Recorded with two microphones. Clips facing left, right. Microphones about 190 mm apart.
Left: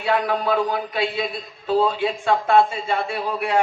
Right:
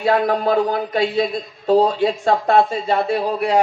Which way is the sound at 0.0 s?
40° right (ahead or behind).